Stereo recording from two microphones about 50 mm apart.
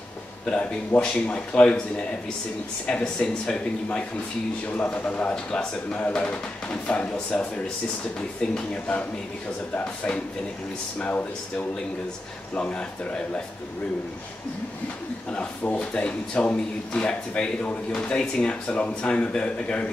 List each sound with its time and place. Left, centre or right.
0.5 s speech: left
2.9 s speech: centre
4.9 s speech: left
5.3 s speech: centre
5.9 s speech: left
15.6 s speech: left
15.9 s speech: centre